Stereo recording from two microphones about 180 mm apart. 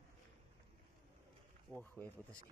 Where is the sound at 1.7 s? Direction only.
10° left (ahead or behind).